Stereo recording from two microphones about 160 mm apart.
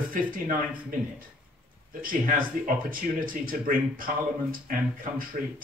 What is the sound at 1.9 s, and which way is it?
Speech, 60° right (ahead or behind).